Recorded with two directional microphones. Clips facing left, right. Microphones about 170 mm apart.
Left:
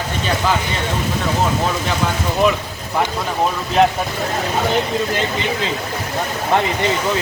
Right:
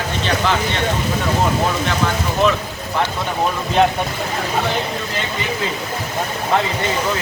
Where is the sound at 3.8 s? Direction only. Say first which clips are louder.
Left 1 dB; centre (ahead or behind).